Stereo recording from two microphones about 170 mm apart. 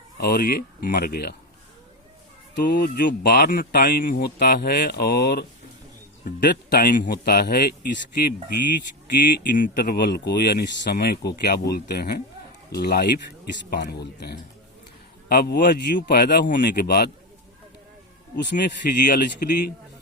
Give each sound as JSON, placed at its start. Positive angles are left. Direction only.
{"t": 0.2, "sound": "speech", "side_deg": 65}
{"t": 2.6, "sound": "speech", "side_deg": 60}
{"t": 9.1, "sound": "speech", "side_deg": 55}
{"t": 16.1, "sound": "speech", "side_deg": 65}
{"t": 18.5, "sound": "speech", "side_deg": 50}